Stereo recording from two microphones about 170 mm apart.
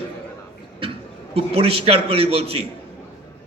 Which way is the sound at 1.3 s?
35° right (ahead or behind).